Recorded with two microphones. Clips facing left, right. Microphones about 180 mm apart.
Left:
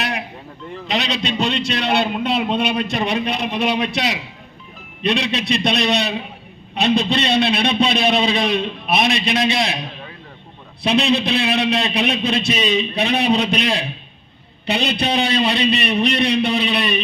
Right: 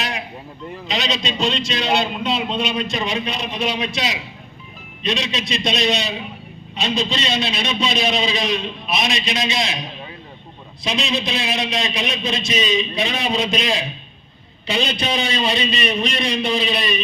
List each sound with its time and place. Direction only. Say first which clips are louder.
0.9 s a man's voice: left 2 dB; 60° left (ahead or behind)
10.8 s a man's voice: left 6 dB; 60° left (ahead or behind)